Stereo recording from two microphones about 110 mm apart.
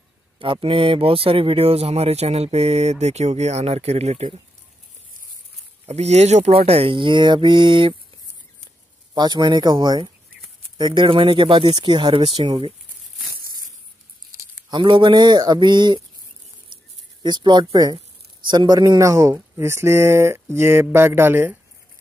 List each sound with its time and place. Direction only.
0.4 s speech: 55° right (ahead or behind); by 4.4 s 75° right (ahead or behind)
5.9 s speech: 80° right; by 7.9 s 50° right (ahead or behind)
9.1 s speech: 40° right (ahead or behind)
11.1 s speech: 50° right (ahead or behind)
12.4 s speech: 55° right (ahead or behind)
14.7 s speech: 45° right (ahead or behind)
16.6 s a sound: 45° right (ahead or behind)
18.5 s speech: 40° right (ahead or behind); by 21.5 s 20° right (ahead or behind)